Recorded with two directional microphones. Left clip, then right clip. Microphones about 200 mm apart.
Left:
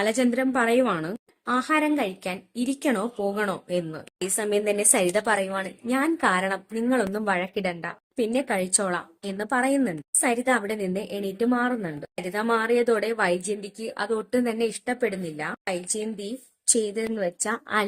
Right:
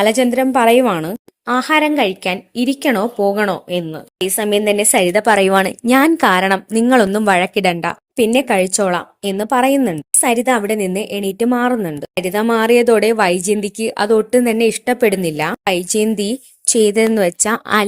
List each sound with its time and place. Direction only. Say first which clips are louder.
0.0 s a woman's voice: right 10 dB; 30° right (ahead or behind)
5.3 s a woman's voice: right 13 dB; 45° right (ahead or behind)